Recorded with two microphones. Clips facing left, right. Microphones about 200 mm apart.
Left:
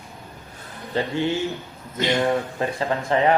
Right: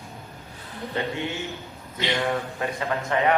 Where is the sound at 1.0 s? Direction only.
30° left (ahead or behind).